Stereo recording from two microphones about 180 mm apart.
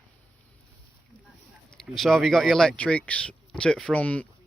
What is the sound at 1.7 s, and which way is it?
Speech, centre (ahead or behind).